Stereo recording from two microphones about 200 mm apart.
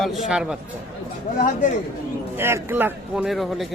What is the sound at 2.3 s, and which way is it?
A man's voice, 10° right (ahead or behind).